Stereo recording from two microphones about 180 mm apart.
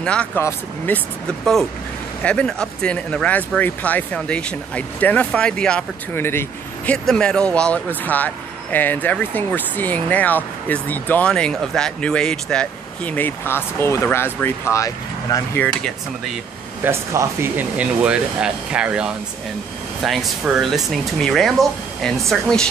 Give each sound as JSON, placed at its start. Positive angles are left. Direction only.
{"t": 0.0, "sound": "speech", "side_deg": 5}
{"t": 16.8, "sound": "speech", "side_deg": -15}